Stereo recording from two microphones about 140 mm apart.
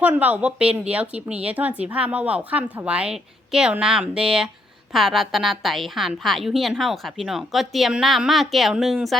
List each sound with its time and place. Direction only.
0.0 s a woman's voice: 10° right (ahead or behind)